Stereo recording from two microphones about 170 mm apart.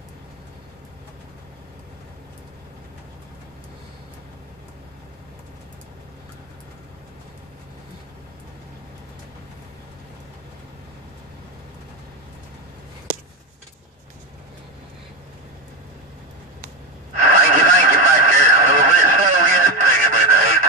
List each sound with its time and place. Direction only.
17.2 s radio: 45° right (ahead or behind)